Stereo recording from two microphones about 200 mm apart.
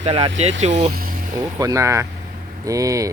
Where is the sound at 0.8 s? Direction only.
50° right (ahead or behind).